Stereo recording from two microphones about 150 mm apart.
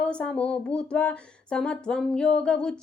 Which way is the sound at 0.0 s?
5° left (ahead or behind).